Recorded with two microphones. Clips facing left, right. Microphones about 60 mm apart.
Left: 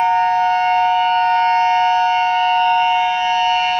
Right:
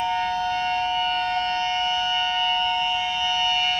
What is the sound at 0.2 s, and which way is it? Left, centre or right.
Civil defense siren, left.